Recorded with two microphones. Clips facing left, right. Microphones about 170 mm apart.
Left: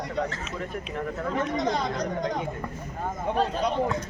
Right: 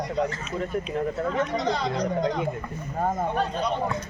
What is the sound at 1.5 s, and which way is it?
Speech, 50° left (ahead or behind).